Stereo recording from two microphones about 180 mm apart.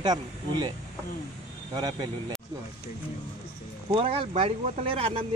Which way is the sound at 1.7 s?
25° right (ahead or behind).